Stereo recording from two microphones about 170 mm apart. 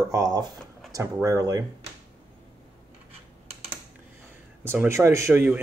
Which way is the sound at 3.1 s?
35° right (ahead or behind).